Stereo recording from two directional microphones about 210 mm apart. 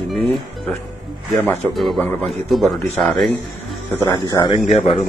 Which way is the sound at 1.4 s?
Centre (ahead or behind).